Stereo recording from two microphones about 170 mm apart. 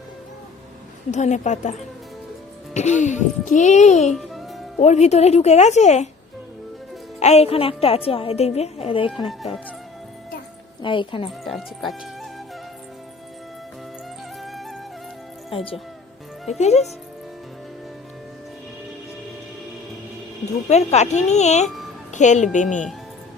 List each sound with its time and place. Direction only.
1.1 s a child's voice: 45° left (ahead or behind)
4.1 s music: centre (ahead or behind)
4.8 s a woman's voice: 40° left (ahead or behind)
7.2 s a woman's voice: 40° left (ahead or behind)
10.8 s speech: 30° left (ahead or behind)
11.3 s speech: centre (ahead or behind)
14.4 s music: centre (ahead or behind)
15.4 s a woman's voice: 35° left (ahead or behind)
20.7 s a woman's voice: 40° left (ahead or behind)